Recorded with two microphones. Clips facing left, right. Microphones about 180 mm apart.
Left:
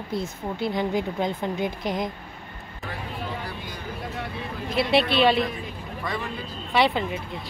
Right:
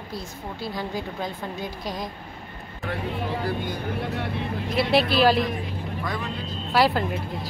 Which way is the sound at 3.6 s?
65° right (ahead or behind).